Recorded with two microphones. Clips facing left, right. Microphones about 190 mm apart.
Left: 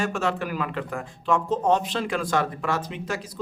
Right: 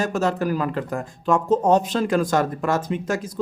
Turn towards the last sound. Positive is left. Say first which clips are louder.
# right 7 dB
turn(degrees=-45)  # may be behind; listen again after turning